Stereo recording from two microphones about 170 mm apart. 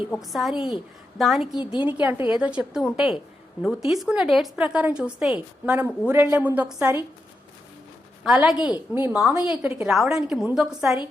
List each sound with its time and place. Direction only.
0.1 s a woman's voice: centre (ahead or behind)
8.2 s speech: 5° right (ahead or behind)
8.5 s a woman's voice: 25° left (ahead or behind)
9.0 s a woman's voice: 10° right (ahead or behind)